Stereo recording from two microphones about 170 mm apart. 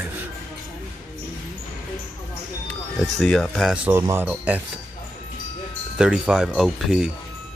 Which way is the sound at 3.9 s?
15° right (ahead or behind).